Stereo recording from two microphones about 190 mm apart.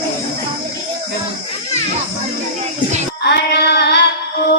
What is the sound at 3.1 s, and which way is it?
Music, 60° left (ahead or behind).